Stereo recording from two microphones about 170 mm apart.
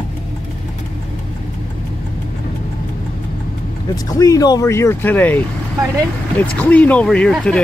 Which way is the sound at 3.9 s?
20° left (ahead or behind).